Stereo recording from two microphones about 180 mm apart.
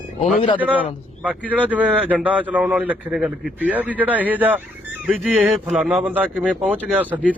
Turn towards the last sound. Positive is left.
turn(degrees=-10)  # may be behind; listen again after turning